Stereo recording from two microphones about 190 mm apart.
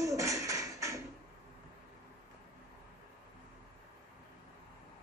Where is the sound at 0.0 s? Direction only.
15° right (ahead or behind).